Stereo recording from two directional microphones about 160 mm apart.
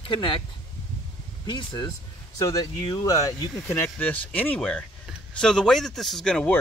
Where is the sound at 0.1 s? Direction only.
30° left (ahead or behind).